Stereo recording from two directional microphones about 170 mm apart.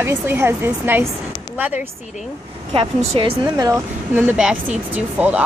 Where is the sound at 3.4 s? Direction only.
20° right (ahead or behind).